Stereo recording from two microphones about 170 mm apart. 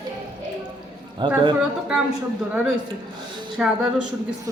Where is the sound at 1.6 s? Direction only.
5° right (ahead or behind).